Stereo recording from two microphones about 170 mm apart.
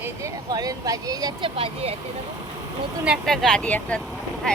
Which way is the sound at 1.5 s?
35° right (ahead or behind).